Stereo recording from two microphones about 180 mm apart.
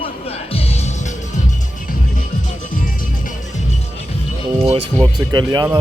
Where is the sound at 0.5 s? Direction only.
35° left (ahead or behind).